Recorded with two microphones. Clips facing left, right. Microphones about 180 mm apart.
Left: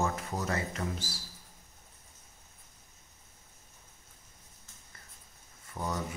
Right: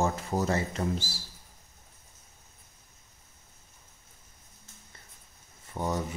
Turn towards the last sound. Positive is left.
turn(degrees=-25)  # may be behind; listen again after turning